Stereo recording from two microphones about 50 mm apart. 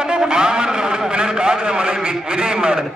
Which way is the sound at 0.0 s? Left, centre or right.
Centre.